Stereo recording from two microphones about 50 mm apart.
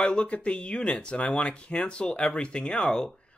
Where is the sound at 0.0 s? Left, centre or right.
Left.